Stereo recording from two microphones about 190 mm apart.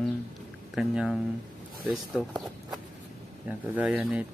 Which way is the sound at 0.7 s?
5° right (ahead or behind).